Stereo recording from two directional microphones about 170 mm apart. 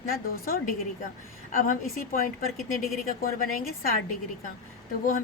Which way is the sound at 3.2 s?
60° left (ahead or behind).